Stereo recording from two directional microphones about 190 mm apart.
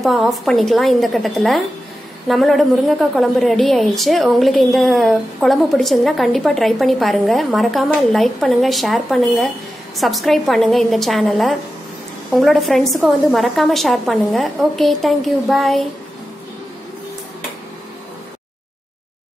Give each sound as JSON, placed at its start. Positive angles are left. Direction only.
{"t": 0.0, "sound": "a woman's voice", "side_deg": 0}